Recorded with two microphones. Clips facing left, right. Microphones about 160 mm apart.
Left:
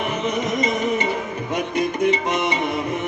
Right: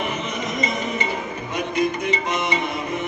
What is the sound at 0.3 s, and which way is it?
Music, 60° left (ahead or behind).